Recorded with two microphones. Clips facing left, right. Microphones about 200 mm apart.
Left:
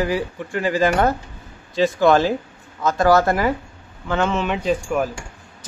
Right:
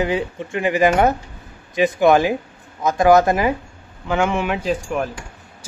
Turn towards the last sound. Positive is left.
turn(degrees=0)  # may be behind; listen again after turning